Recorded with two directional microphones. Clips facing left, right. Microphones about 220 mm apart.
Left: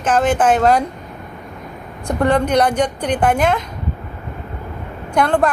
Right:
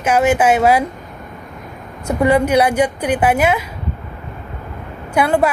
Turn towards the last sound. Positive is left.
turn(degrees=-5)  # may be behind; listen again after turning